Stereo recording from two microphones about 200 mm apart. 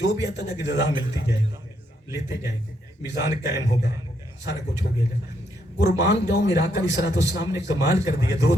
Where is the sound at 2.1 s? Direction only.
15° right (ahead or behind).